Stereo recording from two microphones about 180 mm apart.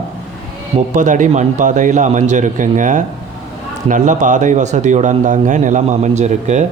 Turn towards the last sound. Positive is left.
turn(degrees=-40)  # may be behind; listen again after turning